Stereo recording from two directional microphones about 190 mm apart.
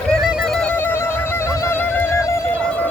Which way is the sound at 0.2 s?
Centre (ahead or behind).